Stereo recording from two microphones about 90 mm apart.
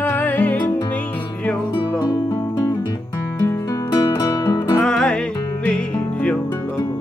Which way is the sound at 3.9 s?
45° left (ahead or behind).